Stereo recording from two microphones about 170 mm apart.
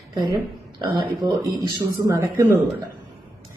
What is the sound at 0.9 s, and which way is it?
A woman's voice, 25° right (ahead or behind).